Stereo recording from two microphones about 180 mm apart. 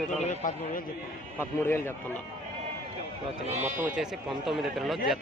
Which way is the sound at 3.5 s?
45° right (ahead or behind).